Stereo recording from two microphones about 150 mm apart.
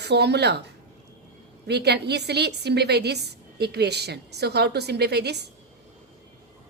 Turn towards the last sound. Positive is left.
turn(degrees=-90)